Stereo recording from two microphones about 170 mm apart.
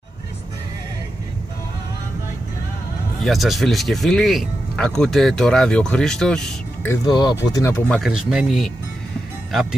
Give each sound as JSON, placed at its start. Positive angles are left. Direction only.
{"t": 3.3, "sound": "speech", "side_deg": 0}
{"t": 7.1, "sound": "speech", "side_deg": 25}
{"t": 7.9, "sound": "speech", "side_deg": 0}